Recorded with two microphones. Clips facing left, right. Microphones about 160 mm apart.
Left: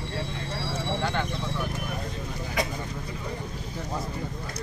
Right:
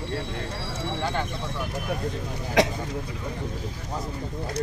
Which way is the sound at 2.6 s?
90° right.